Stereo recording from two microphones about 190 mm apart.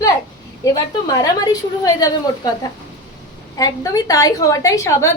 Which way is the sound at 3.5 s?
20° left (ahead or behind).